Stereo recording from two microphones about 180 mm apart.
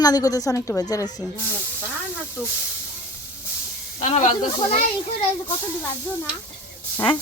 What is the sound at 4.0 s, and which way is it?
Speech, 45° left (ahead or behind).